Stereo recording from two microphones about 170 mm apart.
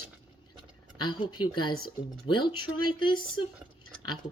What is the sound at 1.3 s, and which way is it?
Speech, 25° left (ahead or behind).